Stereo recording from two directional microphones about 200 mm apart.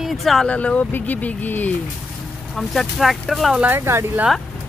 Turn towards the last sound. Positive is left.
turn(degrees=-10)  # may be behind; listen again after turning